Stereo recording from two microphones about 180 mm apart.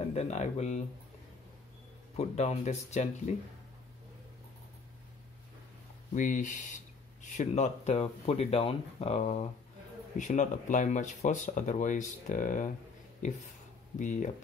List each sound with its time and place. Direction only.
0.1 s speech: 40° left (ahead or behind)
2.1 s speech: 40° left (ahead or behind)
6.1 s speech: 45° left (ahead or behind)